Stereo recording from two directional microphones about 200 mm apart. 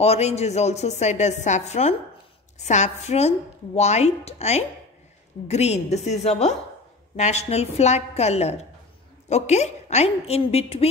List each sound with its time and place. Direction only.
0.0 s speech: 30° left (ahead or behind)